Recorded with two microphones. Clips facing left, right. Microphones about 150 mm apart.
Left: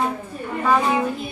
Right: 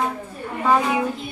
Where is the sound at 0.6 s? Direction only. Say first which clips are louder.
Even; 10° right (ahead or behind).